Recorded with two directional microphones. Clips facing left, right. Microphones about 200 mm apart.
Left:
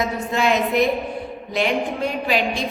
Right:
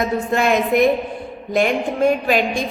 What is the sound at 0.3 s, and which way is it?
A woman's voice, 50° right (ahead or behind).